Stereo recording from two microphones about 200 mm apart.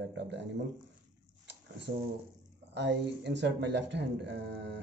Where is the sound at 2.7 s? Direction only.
60° right (ahead or behind).